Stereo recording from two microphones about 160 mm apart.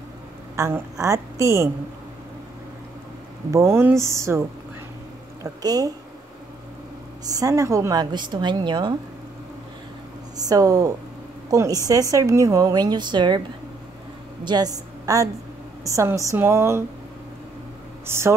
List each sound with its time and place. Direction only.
0.6 s a woman's voice: 15° right (ahead or behind)
3.5 s speech: 15° right (ahead or behind)
5.4 s a woman's voice: 25° right (ahead or behind)
7.2 s a woman's voice: 20° right (ahead or behind)
10.3 s a woman's voice: 20° right (ahead or behind)
14.4 s a woman's voice: 25° right (ahead or behind)
18.0 s speech: 15° right (ahead or behind)